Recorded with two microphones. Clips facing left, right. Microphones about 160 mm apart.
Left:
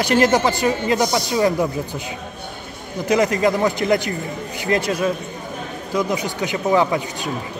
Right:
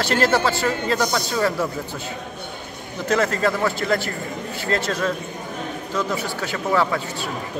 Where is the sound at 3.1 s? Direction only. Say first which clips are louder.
Left 3 dB; 15° left (ahead or behind).